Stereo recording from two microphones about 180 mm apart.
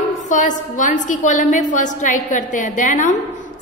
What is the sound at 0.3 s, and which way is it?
A woman's voice, 45° left (ahead or behind).